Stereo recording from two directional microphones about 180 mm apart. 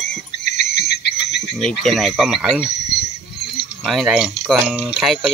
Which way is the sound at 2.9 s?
65° left (ahead or behind).